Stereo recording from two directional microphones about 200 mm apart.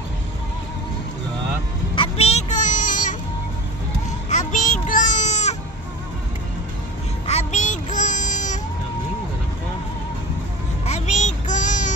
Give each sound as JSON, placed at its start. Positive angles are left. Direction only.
{"t": 2.0, "sound": "music", "side_deg": 30}
{"t": 4.3, "sound": "a sound", "side_deg": 35}
{"t": 7.2, "sound": "child singing", "side_deg": 35}
{"t": 10.9, "sound": "child singing", "side_deg": 35}